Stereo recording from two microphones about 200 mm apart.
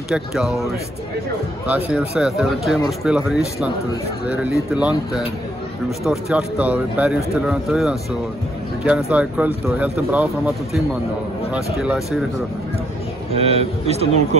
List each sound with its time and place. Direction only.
0.1 s speech: centre (ahead or behind)
1.9 s speech: 5° right (ahead or behind)
13.3 s a man's voice: 30° right (ahead or behind)